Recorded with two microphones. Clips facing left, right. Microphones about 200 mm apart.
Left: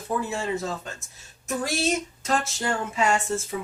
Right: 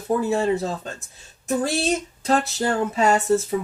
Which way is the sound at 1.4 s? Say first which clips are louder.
Right 4 dB; 30° right (ahead or behind).